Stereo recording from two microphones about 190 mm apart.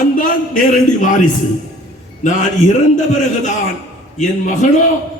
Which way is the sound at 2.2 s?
40° left (ahead or behind).